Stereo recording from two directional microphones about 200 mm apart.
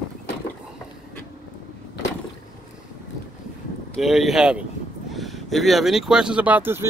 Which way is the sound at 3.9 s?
Centre (ahead or behind).